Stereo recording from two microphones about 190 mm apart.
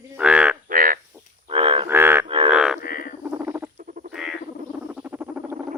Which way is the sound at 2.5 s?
5° right (ahead or behind).